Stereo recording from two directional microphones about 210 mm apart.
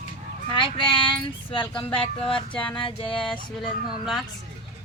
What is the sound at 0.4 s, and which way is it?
Speech, 20° left (ahead or behind).